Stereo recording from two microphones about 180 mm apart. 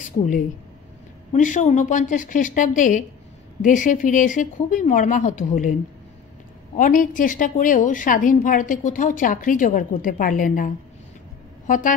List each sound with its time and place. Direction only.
1.3 s a woman's voice: 45° left (ahead or behind)
6.8 s a woman's voice: 45° left (ahead or behind)